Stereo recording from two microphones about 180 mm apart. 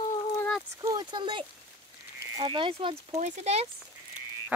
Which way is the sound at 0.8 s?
20° right (ahead or behind).